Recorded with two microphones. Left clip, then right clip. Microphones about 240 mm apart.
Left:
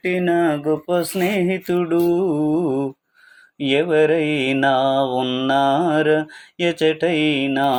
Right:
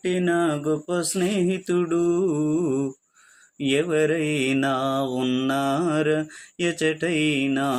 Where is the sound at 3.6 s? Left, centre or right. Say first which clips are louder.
Left 5 dB; centre.